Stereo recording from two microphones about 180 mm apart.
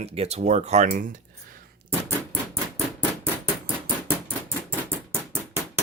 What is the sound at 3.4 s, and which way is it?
Rodents, 10° right (ahead or behind).